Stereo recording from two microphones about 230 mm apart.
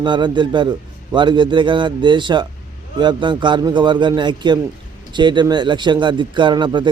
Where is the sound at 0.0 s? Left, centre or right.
Centre.